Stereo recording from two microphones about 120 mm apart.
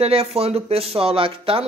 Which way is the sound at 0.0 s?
55° right (ahead or behind).